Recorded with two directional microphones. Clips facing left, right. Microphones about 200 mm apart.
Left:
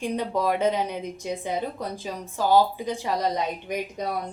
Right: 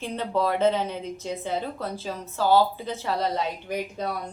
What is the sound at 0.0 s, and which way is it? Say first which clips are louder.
Speech: left 1 dB; 15° left (ahead or behind).